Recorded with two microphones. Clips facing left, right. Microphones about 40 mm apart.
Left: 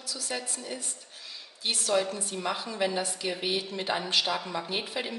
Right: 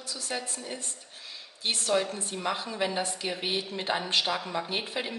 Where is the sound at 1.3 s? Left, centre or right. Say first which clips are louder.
Right 1 dB; right.